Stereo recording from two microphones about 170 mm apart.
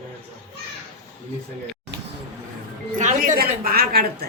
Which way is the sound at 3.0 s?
45° right (ahead or behind).